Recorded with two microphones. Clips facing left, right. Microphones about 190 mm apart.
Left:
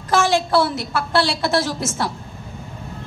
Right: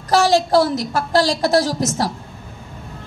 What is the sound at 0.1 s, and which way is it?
A woman's voice, 40° right (ahead or behind).